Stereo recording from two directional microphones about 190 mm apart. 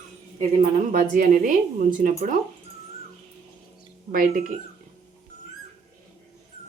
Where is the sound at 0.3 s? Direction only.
45° right (ahead or behind).